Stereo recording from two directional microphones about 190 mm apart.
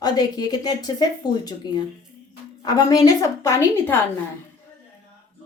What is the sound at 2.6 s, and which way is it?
A woman's voice, 20° left (ahead or behind).